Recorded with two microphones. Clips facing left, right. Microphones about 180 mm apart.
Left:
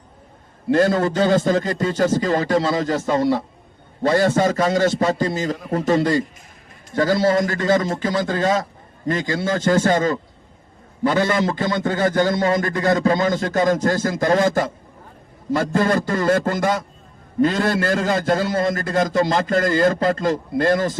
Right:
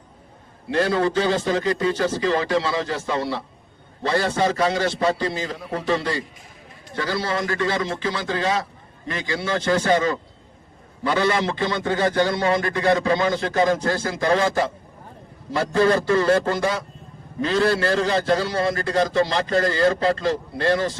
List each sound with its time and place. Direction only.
0.7 s a man's voice: 45° left (ahead or behind)